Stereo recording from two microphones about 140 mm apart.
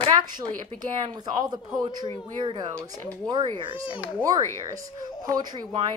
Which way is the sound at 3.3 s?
30° right (ahead or behind).